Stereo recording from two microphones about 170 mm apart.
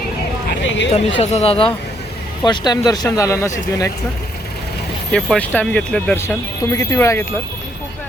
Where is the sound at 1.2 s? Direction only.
35° left (ahead or behind).